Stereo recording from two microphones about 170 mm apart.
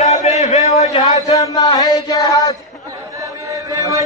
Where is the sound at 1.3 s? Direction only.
25° left (ahead or behind).